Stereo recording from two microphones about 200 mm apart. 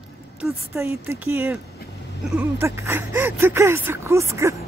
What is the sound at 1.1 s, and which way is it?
Speech, 10° right (ahead or behind).